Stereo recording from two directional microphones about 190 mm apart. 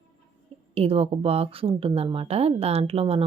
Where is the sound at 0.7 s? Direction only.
30° right (ahead or behind).